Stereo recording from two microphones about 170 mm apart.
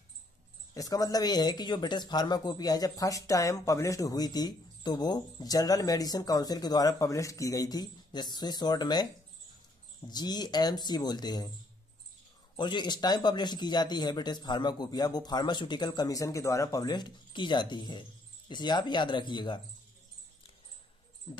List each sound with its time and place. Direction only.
0.7 s speech: 20° left (ahead or behind)
10.0 s speech: 25° left (ahead or behind)
12.5 s speech: 25° left (ahead or behind)